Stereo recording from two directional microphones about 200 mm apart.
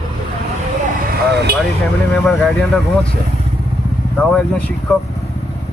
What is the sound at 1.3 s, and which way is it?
Speech, 55° right (ahead or behind).